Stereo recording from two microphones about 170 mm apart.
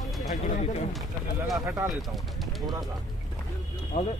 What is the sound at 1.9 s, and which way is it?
Speech, centre (ahead or behind).